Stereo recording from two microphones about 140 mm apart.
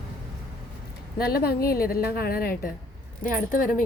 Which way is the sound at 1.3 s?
90° left.